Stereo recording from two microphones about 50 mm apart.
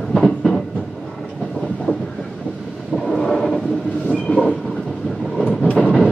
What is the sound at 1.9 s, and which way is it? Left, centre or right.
Train, left.